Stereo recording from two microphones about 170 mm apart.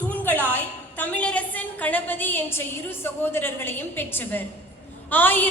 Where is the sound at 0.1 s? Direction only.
10° left (ahead or behind).